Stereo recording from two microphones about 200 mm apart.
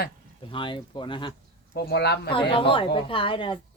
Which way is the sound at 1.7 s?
55° left (ahead or behind).